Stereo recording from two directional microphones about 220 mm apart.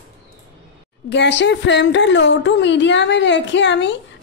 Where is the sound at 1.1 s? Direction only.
55° left (ahead or behind).